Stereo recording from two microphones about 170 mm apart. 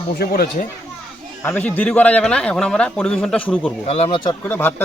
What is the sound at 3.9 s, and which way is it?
Speech, 35° left (ahead or behind).